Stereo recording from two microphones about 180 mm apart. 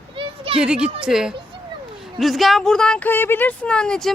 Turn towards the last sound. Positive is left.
turn(degrees=5)  # may be behind; listen again after turning